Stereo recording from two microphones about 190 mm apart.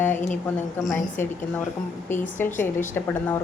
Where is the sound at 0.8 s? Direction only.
15° left (ahead or behind).